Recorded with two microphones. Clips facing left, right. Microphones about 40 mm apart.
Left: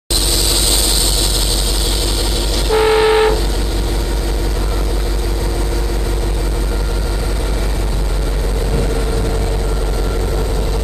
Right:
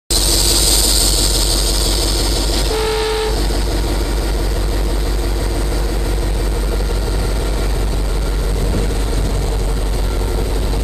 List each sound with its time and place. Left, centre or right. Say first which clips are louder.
2.7 s vehicle: left 8 dB; left